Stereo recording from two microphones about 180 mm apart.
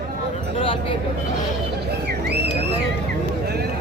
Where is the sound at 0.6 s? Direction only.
30° left (ahead or behind).